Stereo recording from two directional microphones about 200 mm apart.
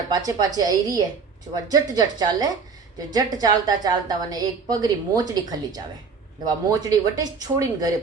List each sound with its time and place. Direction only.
0.1 s a woman's voice: 20° right (ahead or behind)